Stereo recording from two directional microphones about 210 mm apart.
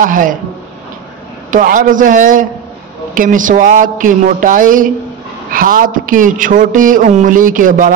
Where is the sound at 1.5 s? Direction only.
40° right (ahead or behind).